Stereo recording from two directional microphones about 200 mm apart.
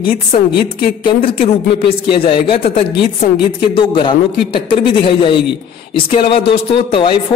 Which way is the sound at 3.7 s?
25° left (ahead or behind).